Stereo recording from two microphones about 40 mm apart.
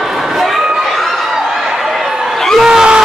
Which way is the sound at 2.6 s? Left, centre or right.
Centre.